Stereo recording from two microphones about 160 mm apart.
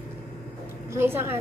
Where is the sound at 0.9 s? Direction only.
15° right (ahead or behind).